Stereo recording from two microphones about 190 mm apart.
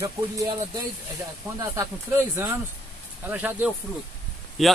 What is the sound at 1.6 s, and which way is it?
Speech, 15° right (ahead or behind).